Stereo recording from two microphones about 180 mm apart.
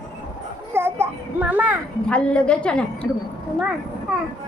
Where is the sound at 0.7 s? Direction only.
15° right (ahead or behind).